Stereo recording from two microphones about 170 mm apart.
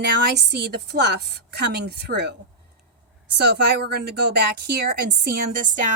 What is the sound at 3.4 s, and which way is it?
Speech, 75° right (ahead or behind).